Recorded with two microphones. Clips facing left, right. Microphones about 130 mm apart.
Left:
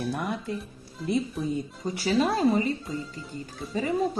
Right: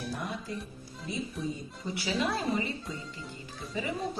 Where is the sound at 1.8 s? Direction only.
40° left (ahead or behind).